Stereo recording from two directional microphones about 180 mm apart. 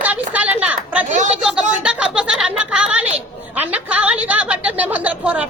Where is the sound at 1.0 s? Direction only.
45° right (ahead or behind).